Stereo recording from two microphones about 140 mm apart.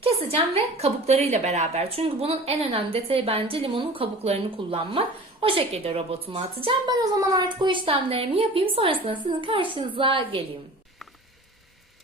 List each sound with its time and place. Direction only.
0.0 s a woman's voice: 45° right (ahead or behind)